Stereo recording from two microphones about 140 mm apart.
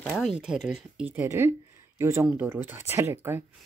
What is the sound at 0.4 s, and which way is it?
Speech, 5° right (ahead or behind).